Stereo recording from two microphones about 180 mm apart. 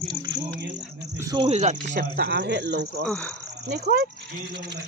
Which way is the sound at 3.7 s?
60° right (ahead or behind).